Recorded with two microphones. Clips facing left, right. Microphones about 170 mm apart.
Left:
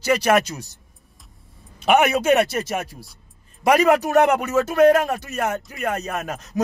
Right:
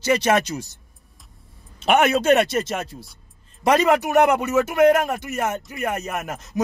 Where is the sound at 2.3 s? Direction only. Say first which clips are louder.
Right 1 dB; centre (ahead or behind).